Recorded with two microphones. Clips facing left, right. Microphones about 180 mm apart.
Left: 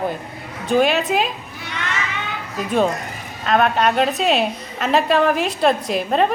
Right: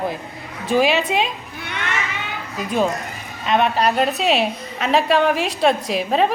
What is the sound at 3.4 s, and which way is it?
A woman's voice, centre (ahead or behind).